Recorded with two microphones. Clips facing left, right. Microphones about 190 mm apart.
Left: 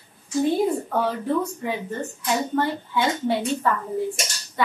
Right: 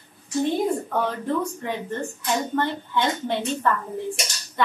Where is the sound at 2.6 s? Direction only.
5° left (ahead or behind).